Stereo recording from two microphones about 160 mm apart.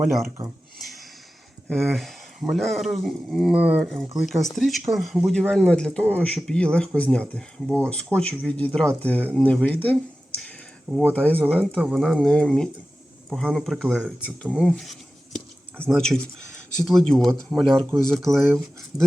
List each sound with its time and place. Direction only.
0.0 s speech: centre (ahead or behind)
1.6 s speech: centre (ahead or behind)
11.1 s speech: 10° left (ahead or behind)
14.4 s speech: 5° right (ahead or behind)
15.9 s speech: 5° left (ahead or behind)